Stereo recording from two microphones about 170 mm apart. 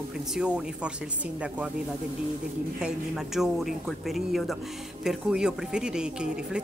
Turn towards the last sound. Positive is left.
turn(degrees=-5)  # may be behind; listen again after turning